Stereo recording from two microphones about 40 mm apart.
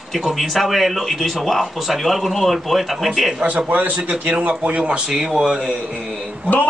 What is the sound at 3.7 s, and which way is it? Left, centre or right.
Speech, right.